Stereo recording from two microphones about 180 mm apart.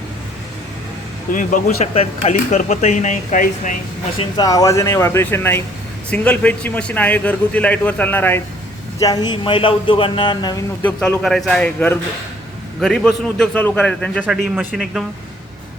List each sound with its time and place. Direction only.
1.3 s speech: 50° left (ahead or behind)
4.4 s a man's voice: 20° left (ahead or behind)
9.0 s a man's voice: 20° left (ahead or behind)
10.8 s a man's voice: 5° left (ahead or behind)
14.2 s a man's voice: 10° right (ahead or behind)